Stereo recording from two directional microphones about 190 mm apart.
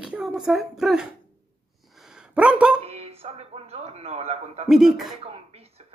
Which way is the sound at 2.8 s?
30° right (ahead or behind).